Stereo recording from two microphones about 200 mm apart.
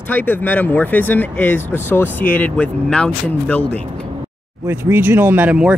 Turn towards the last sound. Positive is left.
turn(degrees=-5)  # may be behind; listen again after turning